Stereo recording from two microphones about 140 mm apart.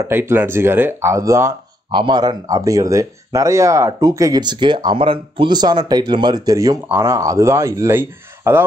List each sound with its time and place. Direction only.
0.0 s speech: 15° right (ahead or behind)
1.9 s speech: 35° right (ahead or behind); by 8.6 s 15° right (ahead or behind)